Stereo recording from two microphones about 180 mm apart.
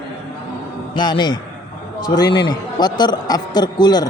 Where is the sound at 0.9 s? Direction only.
25° left (ahead or behind).